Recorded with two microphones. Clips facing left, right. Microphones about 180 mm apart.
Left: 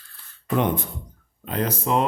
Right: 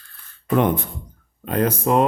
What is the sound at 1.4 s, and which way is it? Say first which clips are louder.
Speech: right 5 dB; 50° right (ahead or behind).